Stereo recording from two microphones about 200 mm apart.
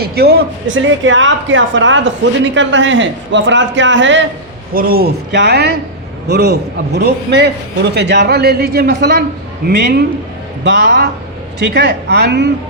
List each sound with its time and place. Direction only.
0.0 s a man's voice: 50° right (ahead or behind)
4.7 s a man's voice: 45° right (ahead or behind)